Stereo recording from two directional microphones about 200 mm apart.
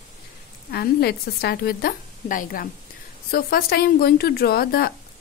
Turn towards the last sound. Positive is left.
turn(degrees=50)  # may be behind; listen again after turning